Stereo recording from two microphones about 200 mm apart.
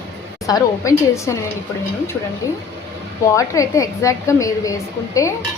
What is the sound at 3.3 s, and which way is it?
A woman's voice, 15° left (ahead or behind).